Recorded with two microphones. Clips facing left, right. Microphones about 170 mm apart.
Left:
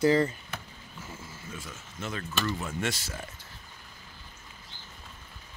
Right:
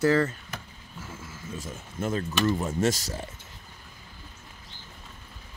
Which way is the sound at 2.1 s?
35° right (ahead or behind).